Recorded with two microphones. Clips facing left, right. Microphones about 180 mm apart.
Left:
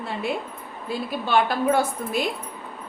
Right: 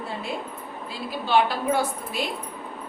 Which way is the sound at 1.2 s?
50° left (ahead or behind).